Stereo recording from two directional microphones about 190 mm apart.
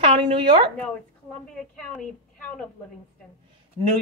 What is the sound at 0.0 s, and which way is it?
Speech, 25° right (ahead or behind).